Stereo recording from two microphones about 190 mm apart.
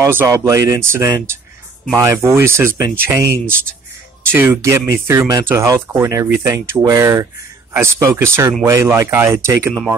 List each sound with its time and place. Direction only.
0.0 s speech: 15° right (ahead or behind)